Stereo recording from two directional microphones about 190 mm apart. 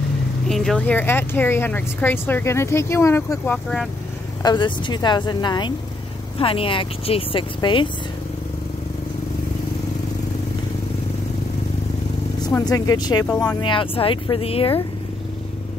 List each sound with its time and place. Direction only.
0.5 s speech: centre (ahead or behind)
4.4 s speech: 20° left (ahead or behind)
12.4 s speech: 20° left (ahead or behind)